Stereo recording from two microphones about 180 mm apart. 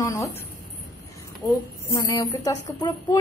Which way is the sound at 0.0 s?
15° left (ahead or behind).